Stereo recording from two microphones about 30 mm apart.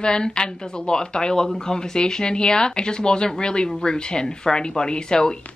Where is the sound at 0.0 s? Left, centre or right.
Left.